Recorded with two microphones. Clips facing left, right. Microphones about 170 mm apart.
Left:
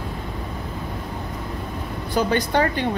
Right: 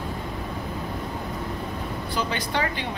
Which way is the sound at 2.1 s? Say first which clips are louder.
Left 8 dB; 45° left (ahead or behind).